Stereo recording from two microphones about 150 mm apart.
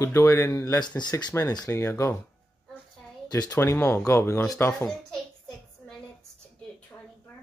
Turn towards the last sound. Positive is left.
turn(degrees=15)  # may be behind; listen again after turning